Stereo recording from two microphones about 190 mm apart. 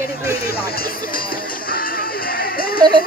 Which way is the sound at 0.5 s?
50° left (ahead or behind).